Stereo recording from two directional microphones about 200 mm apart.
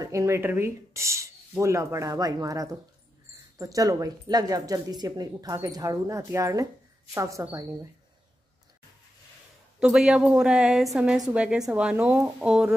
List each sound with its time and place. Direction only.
0.0 s speech: 15° right (ahead or behind)
9.8 s a woman's voice: 5° right (ahead or behind)